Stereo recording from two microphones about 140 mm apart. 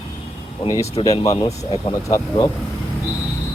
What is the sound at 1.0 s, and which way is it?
Speech, 40° left (ahead or behind).